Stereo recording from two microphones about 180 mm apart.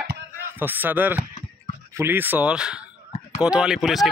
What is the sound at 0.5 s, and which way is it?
Speech, 10° right (ahead or behind).